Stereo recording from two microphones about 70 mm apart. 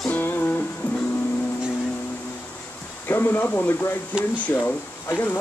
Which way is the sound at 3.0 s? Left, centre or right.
Left.